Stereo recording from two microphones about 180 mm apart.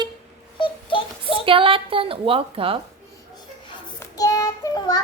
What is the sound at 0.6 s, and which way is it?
Child singing, 30° left (ahead or behind).